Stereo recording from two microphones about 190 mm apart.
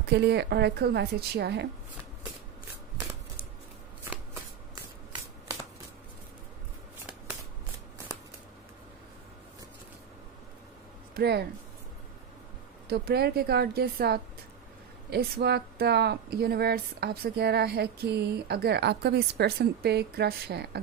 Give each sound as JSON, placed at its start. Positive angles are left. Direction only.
{"t": 0.1, "sound": "speech", "side_deg": -65}
{"t": 4.0, "sound": "shuffling cards", "side_deg": -15}
{"t": 11.1, "sound": "speech", "side_deg": -60}
{"t": 12.8, "sound": "speech", "side_deg": -55}